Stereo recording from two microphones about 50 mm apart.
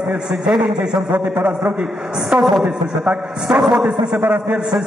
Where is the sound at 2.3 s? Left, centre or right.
Centre.